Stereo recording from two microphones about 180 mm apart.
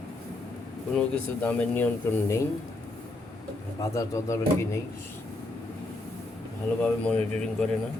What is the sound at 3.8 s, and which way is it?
Speech, 15° left (ahead or behind).